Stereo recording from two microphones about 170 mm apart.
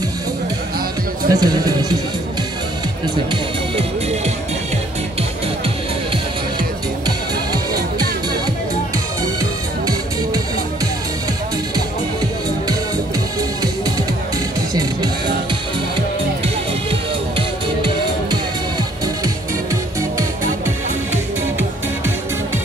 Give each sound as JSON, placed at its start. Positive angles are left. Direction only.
{"t": 1.3, "sound": "speech", "side_deg": -25}
{"t": 13.6, "sound": "music", "side_deg": -20}
{"t": 17.4, "sound": "music", "side_deg": -30}